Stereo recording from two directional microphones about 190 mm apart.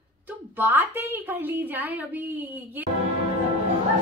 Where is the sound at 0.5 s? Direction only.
10° right (ahead or behind).